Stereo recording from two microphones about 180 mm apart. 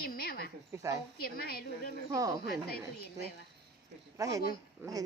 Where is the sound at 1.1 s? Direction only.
55° left (ahead or behind).